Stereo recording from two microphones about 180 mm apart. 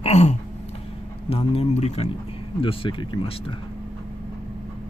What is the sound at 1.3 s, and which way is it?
Speech, 35° left (ahead or behind).